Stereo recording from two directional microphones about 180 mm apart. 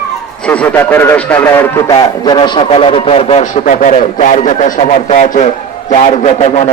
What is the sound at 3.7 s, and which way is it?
Speech, 45° left (ahead or behind).